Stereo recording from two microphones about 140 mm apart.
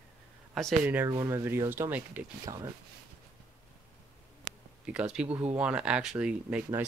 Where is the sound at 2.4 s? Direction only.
30° right (ahead or behind).